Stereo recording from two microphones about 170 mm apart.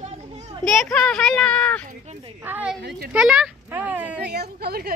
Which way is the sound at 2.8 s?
80° right.